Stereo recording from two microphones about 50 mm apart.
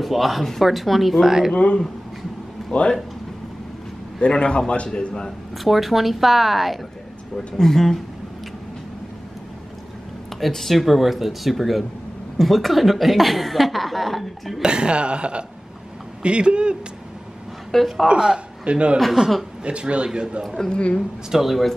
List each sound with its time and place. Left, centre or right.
0.0 s speech: centre
1.5 s speech: centre
4.2 s a man's voice: left
5.6 s speech: centre
7.3 s speech: centre
10.4 s speech: centre
14.6 s speech: centre
17.6 s a woman's voice: centre
18.0 s a man's voice: centre
18.9 s speech: centre
19.6 s speech: right
20.4 s speech: centre
20.7 s a man's voice: left
21.3 s speech: centre